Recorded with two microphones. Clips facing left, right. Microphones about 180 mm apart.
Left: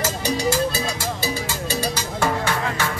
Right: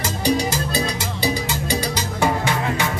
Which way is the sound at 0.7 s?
15° right (ahead or behind).